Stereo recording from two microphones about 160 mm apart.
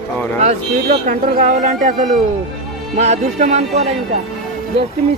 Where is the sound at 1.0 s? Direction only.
50° right (ahead or behind).